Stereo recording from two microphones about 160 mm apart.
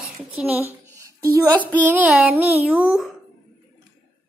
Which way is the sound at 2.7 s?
5° right (ahead or behind).